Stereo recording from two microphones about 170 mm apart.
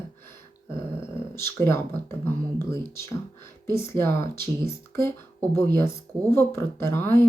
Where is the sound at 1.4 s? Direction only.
15° left (ahead or behind).